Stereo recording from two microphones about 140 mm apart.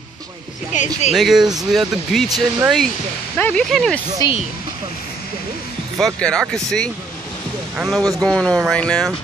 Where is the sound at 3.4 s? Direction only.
15° left (ahead or behind).